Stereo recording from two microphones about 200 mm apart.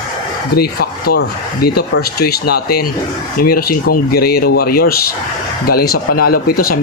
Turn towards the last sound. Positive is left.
turn(degrees=45)  # may be behind; listen again after turning